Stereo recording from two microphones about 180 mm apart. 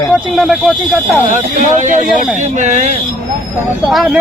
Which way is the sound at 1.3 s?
45° right (ahead or behind).